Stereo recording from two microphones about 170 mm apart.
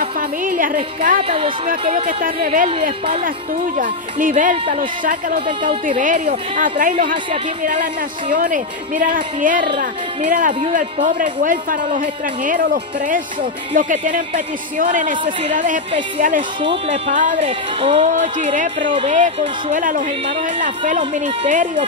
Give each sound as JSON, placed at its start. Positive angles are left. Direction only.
{"t": 0.0, "sound": "speech", "side_deg": -55}
{"t": 17.4, "sound": "speech", "side_deg": -30}
{"t": 18.0, "sound": "speech", "side_deg": -45}